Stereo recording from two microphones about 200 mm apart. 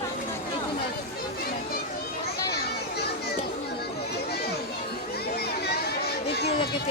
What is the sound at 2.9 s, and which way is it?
Children playing, 55° left (ahead or behind).